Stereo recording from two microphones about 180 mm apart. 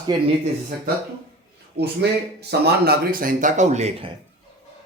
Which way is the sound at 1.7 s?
70° right (ahead or behind).